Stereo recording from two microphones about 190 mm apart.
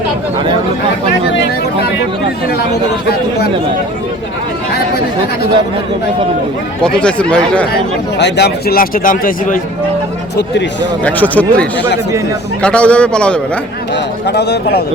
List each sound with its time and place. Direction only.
6.8 s speech: 5° left (ahead or behind)
8.2 s a man's voice: 60° left (ahead or behind)
11.0 s speech: 10° left (ahead or behind)
13.9 s speech: 60° left (ahead or behind)